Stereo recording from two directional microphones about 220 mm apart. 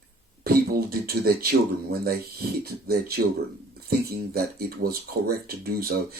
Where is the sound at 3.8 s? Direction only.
45° right (ahead or behind).